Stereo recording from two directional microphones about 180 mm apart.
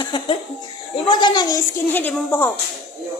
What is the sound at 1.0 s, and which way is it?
A woman's voice, 25° left (ahead or behind).